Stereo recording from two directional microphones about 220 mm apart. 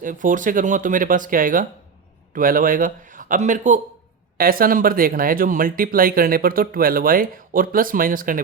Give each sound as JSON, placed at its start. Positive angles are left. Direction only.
{"t": 0.0, "sound": "speech", "side_deg": -35}